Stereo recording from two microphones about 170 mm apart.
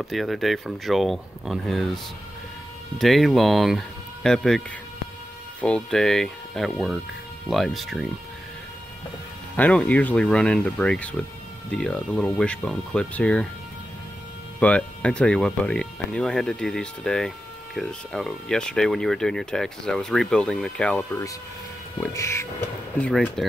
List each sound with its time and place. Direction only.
0.0 s speech: centre (ahead or behind)
3.0 s speech: centre (ahead or behind)
9.6 s speech: 5° left (ahead or behind)
14.6 s speech: 5° left (ahead or behind)
22.9 s speech: 5° left (ahead or behind)